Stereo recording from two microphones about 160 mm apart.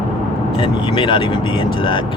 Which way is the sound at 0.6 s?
30° left (ahead or behind).